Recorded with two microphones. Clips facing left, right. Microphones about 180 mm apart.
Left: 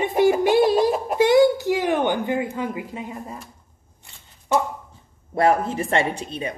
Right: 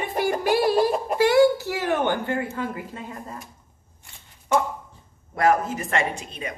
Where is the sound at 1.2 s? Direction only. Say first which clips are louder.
Left 2 dB; 20° left (ahead or behind).